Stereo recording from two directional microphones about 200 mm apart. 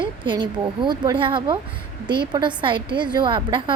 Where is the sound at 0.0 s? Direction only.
25° right (ahead or behind).